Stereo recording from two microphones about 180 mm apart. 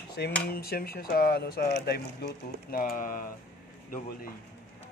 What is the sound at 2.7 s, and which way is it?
Speech, 55° left (ahead or behind).